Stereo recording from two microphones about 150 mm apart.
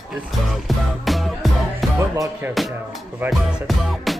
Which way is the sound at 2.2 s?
15° right (ahead or behind).